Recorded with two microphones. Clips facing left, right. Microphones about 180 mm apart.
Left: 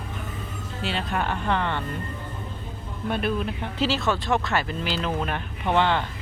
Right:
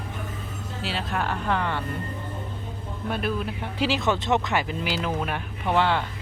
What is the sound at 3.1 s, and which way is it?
Speech, 5° right (ahead or behind).